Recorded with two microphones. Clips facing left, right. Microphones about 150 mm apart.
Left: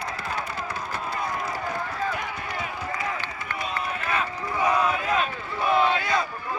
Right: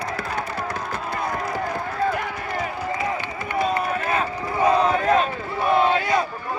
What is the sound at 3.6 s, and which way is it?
Run, 35° right (ahead or behind).